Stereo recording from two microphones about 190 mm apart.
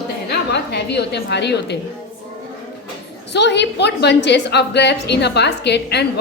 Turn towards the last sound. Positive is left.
turn(degrees=60)  # may be behind; listen again after turning